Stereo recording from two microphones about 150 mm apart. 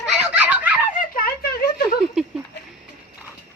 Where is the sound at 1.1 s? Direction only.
85° left.